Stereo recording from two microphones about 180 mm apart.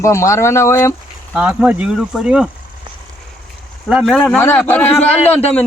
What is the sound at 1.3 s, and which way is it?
Speech, 5° right (ahead or behind).